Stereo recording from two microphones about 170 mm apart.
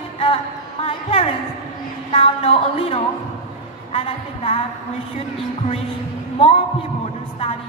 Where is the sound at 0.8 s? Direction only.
35° left (ahead or behind).